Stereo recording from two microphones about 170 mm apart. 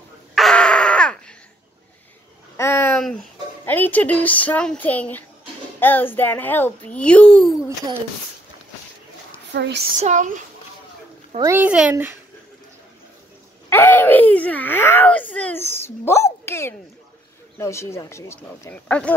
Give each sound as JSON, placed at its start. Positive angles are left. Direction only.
{"t": 0.3, "sound": "crow", "side_deg": 0}
{"t": 2.5, "sound": "a sound", "side_deg": 15}
{"t": 3.6, "sound": "a child's voice", "side_deg": 10}
{"t": 9.5, "sound": "speech", "side_deg": -90}
{"t": 9.9, "sound": "speech", "side_deg": -45}
{"t": 11.4, "sound": "speech", "side_deg": -10}
{"t": 13.7, "sound": "a woman's voice", "side_deg": 10}